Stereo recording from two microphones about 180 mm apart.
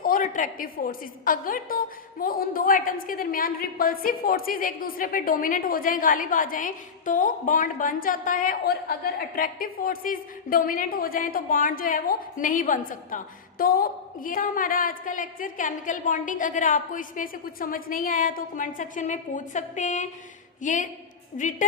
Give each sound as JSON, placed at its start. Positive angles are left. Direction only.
{"t": 0.0, "sound": "a woman's voice", "side_deg": 45}